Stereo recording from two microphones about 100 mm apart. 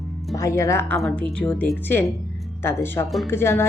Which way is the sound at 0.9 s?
5° left (ahead or behind).